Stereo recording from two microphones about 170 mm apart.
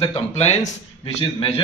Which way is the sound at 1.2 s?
30° left (ahead or behind).